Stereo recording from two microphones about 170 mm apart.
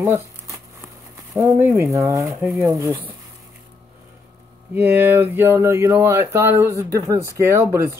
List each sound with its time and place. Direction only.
0.0 s a sound: 15° right (ahead or behind)
1.3 s speech: 15° right (ahead or behind)
4.7 s speech: 15° right (ahead or behind)